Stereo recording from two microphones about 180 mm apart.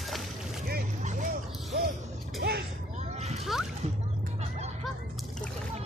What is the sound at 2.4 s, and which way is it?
Vehicle, 60° right (ahead or behind).